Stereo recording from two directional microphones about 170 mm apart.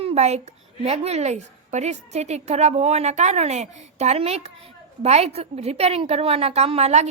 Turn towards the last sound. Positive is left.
turn(degrees=-40)  # may be behind; listen again after turning